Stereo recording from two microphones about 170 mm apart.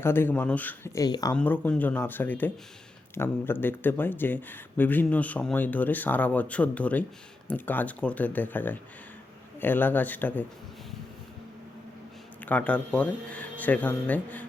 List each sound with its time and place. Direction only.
0.0 s speech: 15° left (ahead or behind)
1.0 s speech: 20° left (ahead or behind)
1.3 s speech: 10° left (ahead or behind)
12.5 s speech: 10° left (ahead or behind)